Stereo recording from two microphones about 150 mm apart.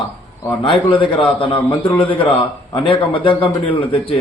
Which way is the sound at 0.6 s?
35° left (ahead or behind).